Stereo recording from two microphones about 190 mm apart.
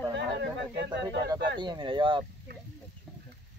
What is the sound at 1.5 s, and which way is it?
Speech, 25° right (ahead or behind).